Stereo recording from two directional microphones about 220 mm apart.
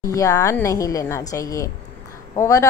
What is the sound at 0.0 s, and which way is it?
A woman's voice, 15° left (ahead or behind).